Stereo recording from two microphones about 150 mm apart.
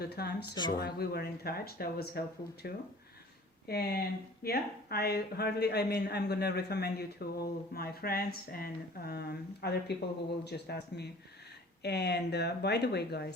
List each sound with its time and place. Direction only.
0.0 s speech: 90° left
0.5 s speech: 30° left (ahead or behind)
0.8 s speech: 90° left